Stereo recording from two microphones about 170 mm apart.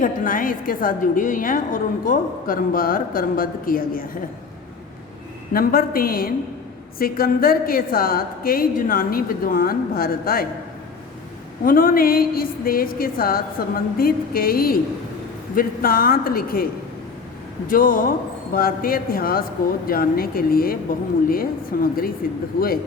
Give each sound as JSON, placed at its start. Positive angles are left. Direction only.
{"t": 0.0, "sound": "a woman's voice", "side_deg": 55}
{"t": 5.5, "sound": "a woman's voice", "side_deg": 60}
{"t": 11.6, "sound": "a woman's voice", "side_deg": 55}
{"t": 17.7, "sound": "a woman's voice", "side_deg": 55}